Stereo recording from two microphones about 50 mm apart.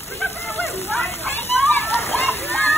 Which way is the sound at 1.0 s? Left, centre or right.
Left.